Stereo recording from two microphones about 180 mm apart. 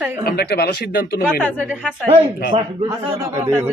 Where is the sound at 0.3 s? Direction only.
60° left (ahead or behind).